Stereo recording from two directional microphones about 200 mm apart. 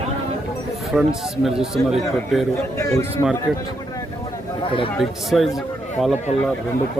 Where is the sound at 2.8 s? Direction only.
15° left (ahead or behind).